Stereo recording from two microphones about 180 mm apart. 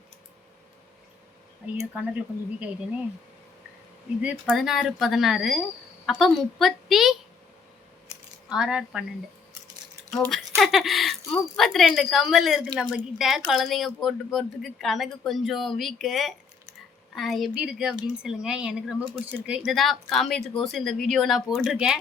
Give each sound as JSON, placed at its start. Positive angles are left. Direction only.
{"t": 1.8, "sound": "speech", "side_deg": -10}
{"t": 4.2, "sound": "speech", "side_deg": -5}
{"t": 8.4, "sound": "speech", "side_deg": -5}
{"t": 10.1, "sound": "speech", "side_deg": 0}